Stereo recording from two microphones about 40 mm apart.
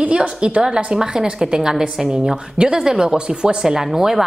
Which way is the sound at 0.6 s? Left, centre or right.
Right.